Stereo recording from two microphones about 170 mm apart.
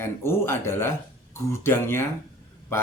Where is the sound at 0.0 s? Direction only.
15° left (ahead or behind).